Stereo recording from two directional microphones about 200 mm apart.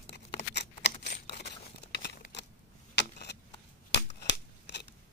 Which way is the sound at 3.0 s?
60° left (ahead or behind).